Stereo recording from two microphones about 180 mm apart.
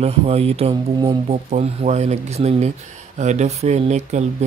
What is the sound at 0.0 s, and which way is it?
Speech, 35° right (ahead or behind).